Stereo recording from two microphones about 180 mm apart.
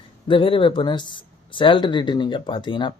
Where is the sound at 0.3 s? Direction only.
30° left (ahead or behind).